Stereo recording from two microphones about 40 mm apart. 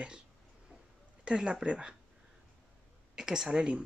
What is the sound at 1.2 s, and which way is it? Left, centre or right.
Speech, right.